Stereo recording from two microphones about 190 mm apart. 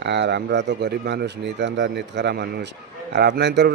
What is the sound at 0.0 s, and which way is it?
Speech, 65° right (ahead or behind).